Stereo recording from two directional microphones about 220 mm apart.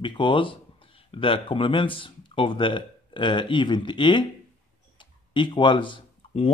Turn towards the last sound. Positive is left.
turn(degrees=25)  # may be behind; listen again after turning